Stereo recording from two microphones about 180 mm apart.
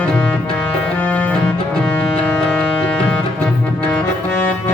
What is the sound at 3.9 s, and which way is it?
Accordion, 10° left (ahead or behind).